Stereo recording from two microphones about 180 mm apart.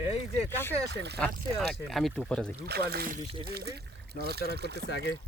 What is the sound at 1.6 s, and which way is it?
Speech, centre (ahead or behind).